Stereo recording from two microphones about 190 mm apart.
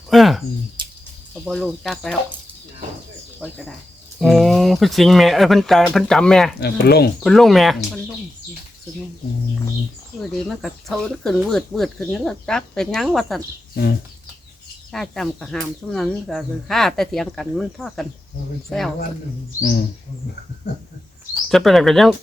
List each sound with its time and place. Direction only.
0.1 s speech: centre (ahead or behind)
0.8 s a sound: 25° right (ahead or behind)
1.5 s speech: centre (ahead or behind)
3.4 s speech: 5° left (ahead or behind)
6.6 s speech: 60° left (ahead or behind)
7.3 s speech: centre (ahead or behind)
10.2 s speech: centre (ahead or behind)
14.9 s speech: centre (ahead or behind)
20.7 s speech: 60° left (ahead or behind)
21.5 s speech: centre (ahead or behind)